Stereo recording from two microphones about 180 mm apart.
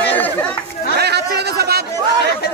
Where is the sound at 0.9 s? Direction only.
65° right (ahead or behind).